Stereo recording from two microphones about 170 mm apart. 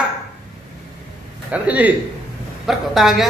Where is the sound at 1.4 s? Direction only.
10° right (ahead or behind).